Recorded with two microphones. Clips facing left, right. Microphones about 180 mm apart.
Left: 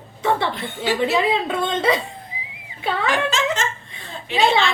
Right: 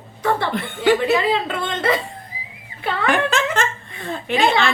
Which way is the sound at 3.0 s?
55° right (ahead or behind).